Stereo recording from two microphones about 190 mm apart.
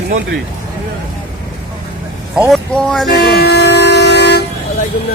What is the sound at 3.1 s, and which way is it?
Vehicle, 55° left (ahead or behind).